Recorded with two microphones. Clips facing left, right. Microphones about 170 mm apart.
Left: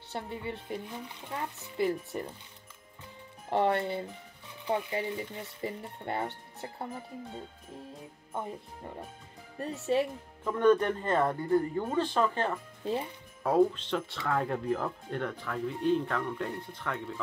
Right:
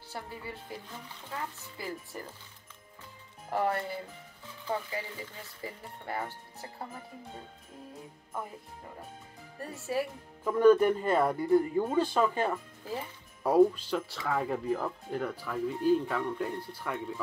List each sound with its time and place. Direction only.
0.1 s speech: 25° left (ahead or behind)
3.4 s speech: 25° left (ahead or behind)
9.9 s speech: 25° left (ahead or behind)
10.4 s speech: 5° right (ahead or behind)
12.8 s speech: 25° left (ahead or behind)
13.4 s speech: 5° right (ahead or behind)